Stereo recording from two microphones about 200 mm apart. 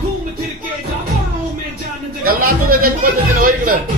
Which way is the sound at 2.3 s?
45° right (ahead or behind).